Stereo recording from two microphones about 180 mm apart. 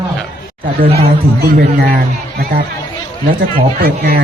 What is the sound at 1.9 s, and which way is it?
Speech, 55° right (ahead or behind).